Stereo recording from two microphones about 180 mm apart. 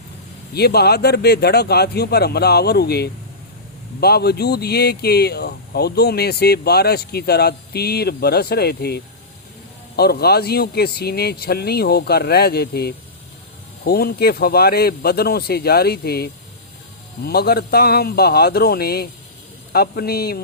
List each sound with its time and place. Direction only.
0.5 s speech: 65° left (ahead or behind)